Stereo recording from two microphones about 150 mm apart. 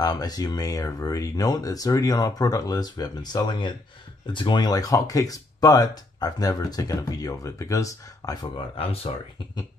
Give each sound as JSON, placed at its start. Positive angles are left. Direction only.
{"t": 0.0, "sound": "speech", "side_deg": 25}
{"t": 8.5, "sound": "speech", "side_deg": 40}